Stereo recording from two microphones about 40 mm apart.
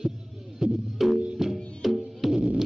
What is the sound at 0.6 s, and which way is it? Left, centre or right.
Music, centre.